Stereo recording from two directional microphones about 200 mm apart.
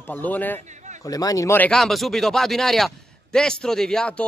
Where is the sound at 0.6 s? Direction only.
35° right (ahead or behind).